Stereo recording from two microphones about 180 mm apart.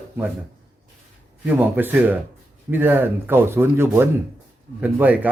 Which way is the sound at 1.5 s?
10° right (ahead or behind).